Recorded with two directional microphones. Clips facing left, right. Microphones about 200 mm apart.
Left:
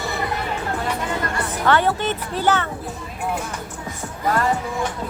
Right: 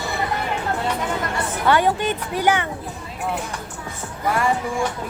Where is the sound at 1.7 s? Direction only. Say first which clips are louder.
Right 1 dB; 10° right (ahead or behind).